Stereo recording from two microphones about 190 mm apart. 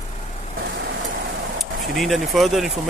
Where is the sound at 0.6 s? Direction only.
65° right (ahead or behind).